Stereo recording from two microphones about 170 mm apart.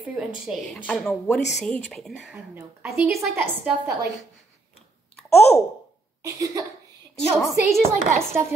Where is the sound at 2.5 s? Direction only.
15° right (ahead or behind).